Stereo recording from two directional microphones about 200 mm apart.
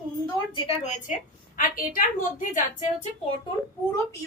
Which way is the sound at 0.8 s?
40° left (ahead or behind).